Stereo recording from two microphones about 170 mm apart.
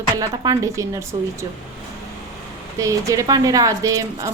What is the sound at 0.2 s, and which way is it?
Speech, 20° right (ahead or behind).